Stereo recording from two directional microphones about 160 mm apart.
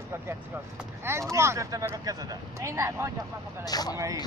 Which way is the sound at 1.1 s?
15° right (ahead or behind).